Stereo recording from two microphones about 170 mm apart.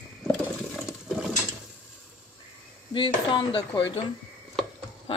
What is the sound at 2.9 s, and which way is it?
Speech, 30° left (ahead or behind).